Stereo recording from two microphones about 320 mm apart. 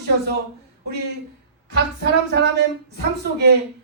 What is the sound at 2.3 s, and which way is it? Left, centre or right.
Speech, right.